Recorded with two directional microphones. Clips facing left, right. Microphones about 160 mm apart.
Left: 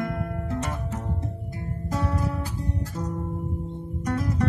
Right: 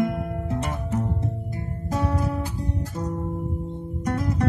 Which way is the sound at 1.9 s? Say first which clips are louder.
Right 3 dB; 20° right (ahead or behind).